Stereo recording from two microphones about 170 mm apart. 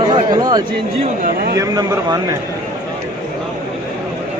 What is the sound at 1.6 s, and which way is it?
Speech, 20° right (ahead or behind).